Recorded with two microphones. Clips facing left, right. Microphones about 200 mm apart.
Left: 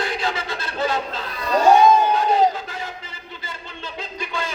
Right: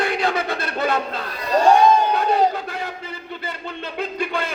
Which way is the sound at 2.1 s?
60° right (ahead or behind).